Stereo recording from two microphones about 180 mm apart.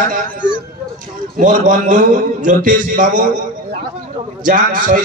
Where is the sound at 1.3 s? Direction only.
50° right (ahead or behind).